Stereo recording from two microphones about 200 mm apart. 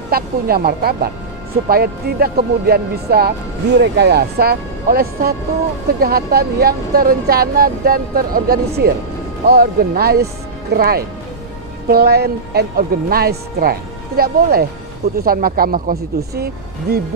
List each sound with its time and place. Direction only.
0.1 s speech: 50° right (ahead or behind)